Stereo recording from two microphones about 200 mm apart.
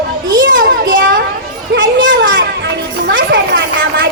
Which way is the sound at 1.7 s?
70° right (ahead or behind).